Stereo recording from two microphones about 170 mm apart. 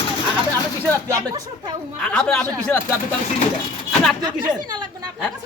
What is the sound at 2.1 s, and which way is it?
Speech, 5° left (ahead or behind).